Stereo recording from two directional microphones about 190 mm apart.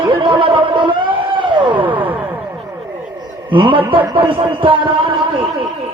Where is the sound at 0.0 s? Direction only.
25° right (ahead or behind).